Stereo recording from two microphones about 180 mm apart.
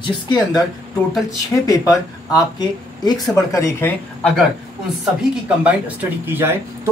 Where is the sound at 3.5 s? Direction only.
15° left (ahead or behind).